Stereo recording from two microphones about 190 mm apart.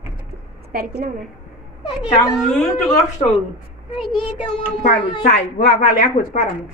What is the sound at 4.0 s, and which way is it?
Speech, 25° left (ahead or behind).